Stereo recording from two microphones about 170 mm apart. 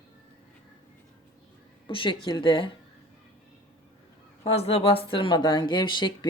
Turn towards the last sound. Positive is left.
turn(degrees=25)  # may be behind; listen again after turning